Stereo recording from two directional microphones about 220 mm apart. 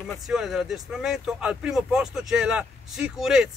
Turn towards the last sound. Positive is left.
turn(degrees=0)  # may be behind; listen again after turning